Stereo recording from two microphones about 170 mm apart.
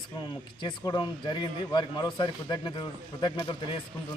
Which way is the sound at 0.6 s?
25° left (ahead or behind).